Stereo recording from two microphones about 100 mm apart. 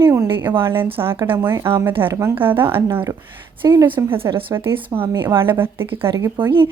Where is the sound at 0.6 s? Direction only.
20° right (ahead or behind).